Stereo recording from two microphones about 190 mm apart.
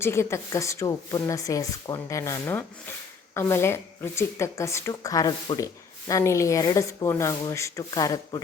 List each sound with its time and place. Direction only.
0.0 s speech: 15° left (ahead or behind)